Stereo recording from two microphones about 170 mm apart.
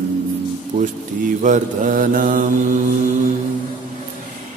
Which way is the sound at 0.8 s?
45° right (ahead or behind).